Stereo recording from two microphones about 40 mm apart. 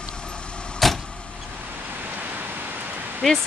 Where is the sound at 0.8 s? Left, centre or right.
Centre.